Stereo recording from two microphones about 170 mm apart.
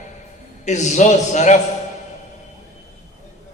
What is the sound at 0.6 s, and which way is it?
Speech, 45° left (ahead or behind).